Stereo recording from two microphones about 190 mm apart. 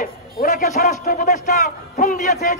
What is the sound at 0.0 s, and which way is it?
A man's voice, 50° left (ahead or behind).